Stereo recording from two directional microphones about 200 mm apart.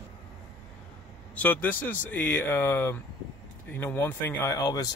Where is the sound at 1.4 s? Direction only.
10° left (ahead or behind).